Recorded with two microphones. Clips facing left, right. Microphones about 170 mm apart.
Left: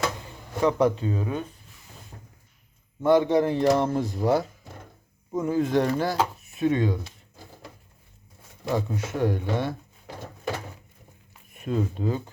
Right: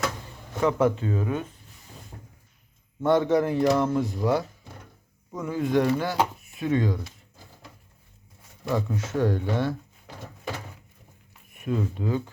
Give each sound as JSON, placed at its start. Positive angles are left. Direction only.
{"t": 0.6, "sound": "speech", "side_deg": 15}
{"t": 3.0, "sound": "speech", "side_deg": 10}
{"t": 3.3, "sound": "speech", "side_deg": 30}
{"t": 6.6, "sound": "speech", "side_deg": 20}
{"t": 8.7, "sound": "speech", "side_deg": 10}
{"t": 11.6, "sound": "speech", "side_deg": 30}